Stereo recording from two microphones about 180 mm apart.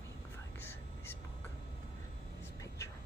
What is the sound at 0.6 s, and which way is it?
Whispering, 10° left (ahead or behind).